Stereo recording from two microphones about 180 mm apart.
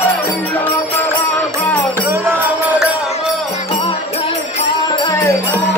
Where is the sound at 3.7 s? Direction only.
35° left (ahead or behind); by 5.6 s 15° left (ahead or behind).